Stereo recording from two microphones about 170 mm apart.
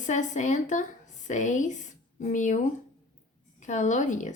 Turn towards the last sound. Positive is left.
turn(degrees=45)  # may be behind; listen again after turning